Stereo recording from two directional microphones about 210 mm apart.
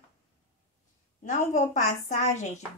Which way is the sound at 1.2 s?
35° left (ahead or behind).